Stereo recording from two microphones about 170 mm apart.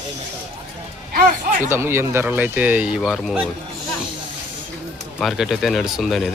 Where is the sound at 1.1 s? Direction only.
55° right (ahead or behind).